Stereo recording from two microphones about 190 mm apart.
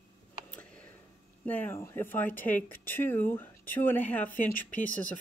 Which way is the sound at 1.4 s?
10° left (ahead or behind).